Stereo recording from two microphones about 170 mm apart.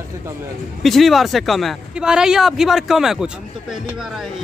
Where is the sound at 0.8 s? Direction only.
Centre (ahead or behind).